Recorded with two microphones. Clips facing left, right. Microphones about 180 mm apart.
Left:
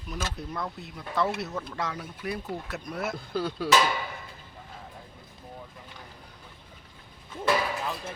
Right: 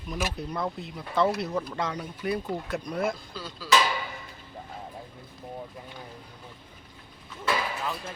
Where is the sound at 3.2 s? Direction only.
60° left (ahead or behind).